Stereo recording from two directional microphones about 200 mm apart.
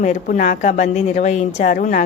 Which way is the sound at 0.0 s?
40° left (ahead or behind).